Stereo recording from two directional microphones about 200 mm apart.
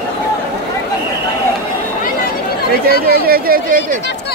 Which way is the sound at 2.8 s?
50° right (ahead or behind).